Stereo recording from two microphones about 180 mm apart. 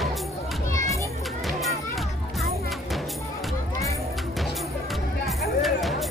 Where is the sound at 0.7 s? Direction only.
15° left (ahead or behind).